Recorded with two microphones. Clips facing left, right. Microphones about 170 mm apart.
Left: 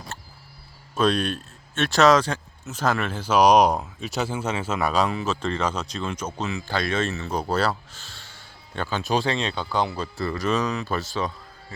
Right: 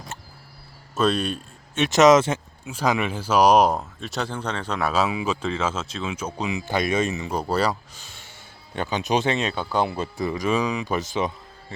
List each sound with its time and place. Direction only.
0.9 s speech: 5° right (ahead or behind)
1.7 s speech: 15° right (ahead or behind)